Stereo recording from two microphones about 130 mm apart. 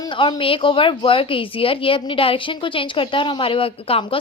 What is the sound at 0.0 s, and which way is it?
A woman's voice, 40° left (ahead or behind).